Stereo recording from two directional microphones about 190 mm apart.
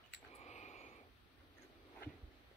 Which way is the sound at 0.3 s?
35° left (ahead or behind).